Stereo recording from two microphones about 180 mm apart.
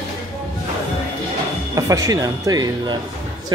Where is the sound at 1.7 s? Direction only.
20° right (ahead or behind).